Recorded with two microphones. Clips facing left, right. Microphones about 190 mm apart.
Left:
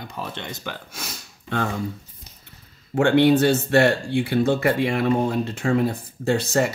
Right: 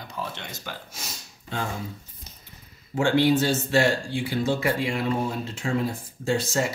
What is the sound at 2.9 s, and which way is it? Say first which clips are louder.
Speech: left 4 dB; 60° left (ahead or behind).